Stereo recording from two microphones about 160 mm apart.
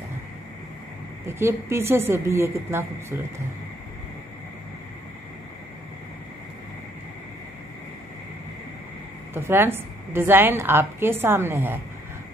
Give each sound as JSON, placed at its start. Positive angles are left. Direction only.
{"t": 1.2, "sound": "a woman's voice", "side_deg": -15}
{"t": 9.3, "sound": "a woman's voice", "side_deg": -15}